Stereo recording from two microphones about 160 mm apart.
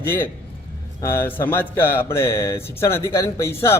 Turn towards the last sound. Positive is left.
turn(degrees=20)  # may be behind; listen again after turning